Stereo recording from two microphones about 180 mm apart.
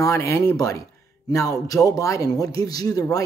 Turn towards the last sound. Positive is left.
turn(degrees=20)  # may be behind; listen again after turning